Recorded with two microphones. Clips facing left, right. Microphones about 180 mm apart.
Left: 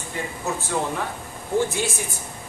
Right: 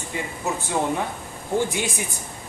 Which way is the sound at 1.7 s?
15° right (ahead or behind).